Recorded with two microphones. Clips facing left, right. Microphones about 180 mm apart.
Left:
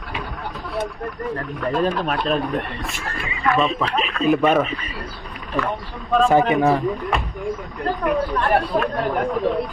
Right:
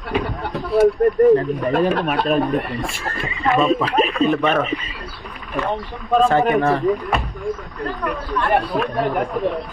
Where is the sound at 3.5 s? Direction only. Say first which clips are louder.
Right 6 dB; 5° right (ahead or behind).